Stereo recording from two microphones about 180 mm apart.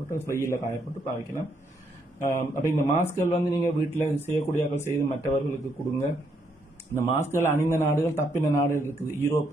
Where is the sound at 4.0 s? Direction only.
45° left (ahead or behind).